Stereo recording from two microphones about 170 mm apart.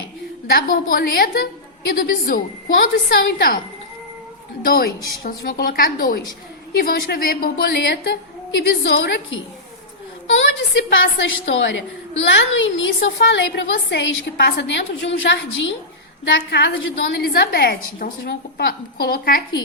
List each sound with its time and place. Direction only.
0.4 s a woman's voice: 60° left (ahead or behind)
4.7 s a woman's voice: 60° left (ahead or behind)
8.6 s a woman's voice: 85° left
10.2 s a woman's voice: 90° left; by 19.4 s 60° left (ahead or behind)